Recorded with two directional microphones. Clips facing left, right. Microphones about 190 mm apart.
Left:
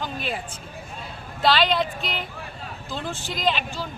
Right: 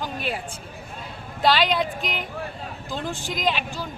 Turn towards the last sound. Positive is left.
turn(degrees=-10)  # may be behind; listen again after turning